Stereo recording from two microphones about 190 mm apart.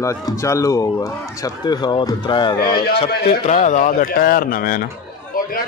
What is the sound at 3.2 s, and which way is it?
A man's voice, 35° left (ahead or behind).